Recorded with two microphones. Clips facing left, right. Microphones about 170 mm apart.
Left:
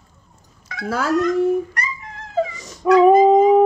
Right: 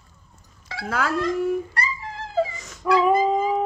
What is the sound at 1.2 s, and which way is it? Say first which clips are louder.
Dog: left 7 dB; 30° right (ahead or behind).